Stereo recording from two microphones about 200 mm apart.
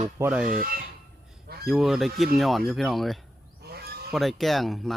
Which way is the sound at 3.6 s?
50° right (ahead or behind).